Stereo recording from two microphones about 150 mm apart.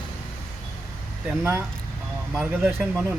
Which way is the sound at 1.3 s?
15° right (ahead or behind).